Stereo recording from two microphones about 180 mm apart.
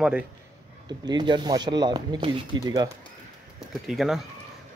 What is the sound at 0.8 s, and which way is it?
Speech, 25° right (ahead or behind).